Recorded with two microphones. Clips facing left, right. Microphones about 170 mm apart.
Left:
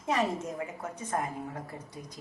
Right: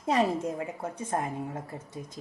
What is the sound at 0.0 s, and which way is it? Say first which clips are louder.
A woman's voice: right 4 dB; 35° right (ahead or behind).